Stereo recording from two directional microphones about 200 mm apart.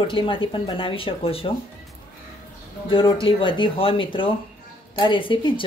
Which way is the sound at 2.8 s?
25° left (ahead or behind).